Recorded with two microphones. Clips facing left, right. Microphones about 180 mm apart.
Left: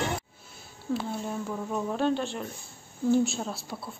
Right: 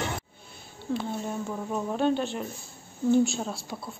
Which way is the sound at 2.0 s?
Centre (ahead or behind).